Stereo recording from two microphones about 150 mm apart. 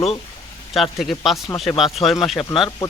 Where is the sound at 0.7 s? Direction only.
Centre (ahead or behind).